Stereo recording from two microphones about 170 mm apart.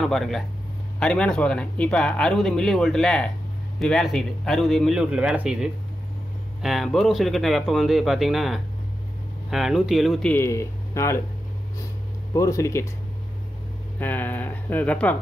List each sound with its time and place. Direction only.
0.0 s speech: centre (ahead or behind)
10.3 s speech: 15° left (ahead or behind)
12.4 s speech: 20° left (ahead or behind)
13.9 s speech: 10° left (ahead or behind)